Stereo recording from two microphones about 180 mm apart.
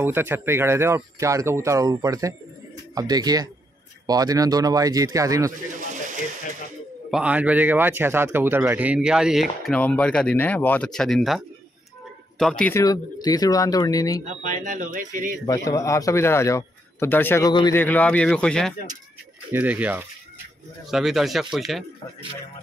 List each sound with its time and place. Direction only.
0.0 s speech: 10° right (ahead or behind)
5.7 s pigeon: 45° right (ahead or behind)
7.1 s speech: 5° right (ahead or behind)
12.7 s speech: 20° left (ahead or behind)
14.2 s speech: 45° right (ahead or behind)
15.4 s a man's voice: 20° left (ahead or behind)
17.5 s speech: 25° left (ahead or behind)
17.7 s speech: 10° left (ahead or behind)
19.5 s speech: 10° right (ahead or behind)